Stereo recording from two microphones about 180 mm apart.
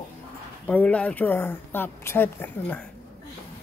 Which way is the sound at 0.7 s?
10° left (ahead or behind).